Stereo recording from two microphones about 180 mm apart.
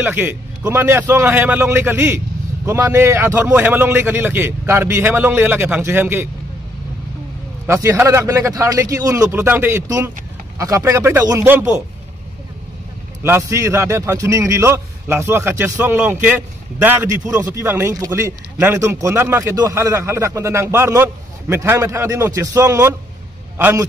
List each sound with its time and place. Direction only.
0.0 s speech: 10° right (ahead or behind)
7.6 s speech: 15° right (ahead or behind)
13.2 s speech: 10° right (ahead or behind)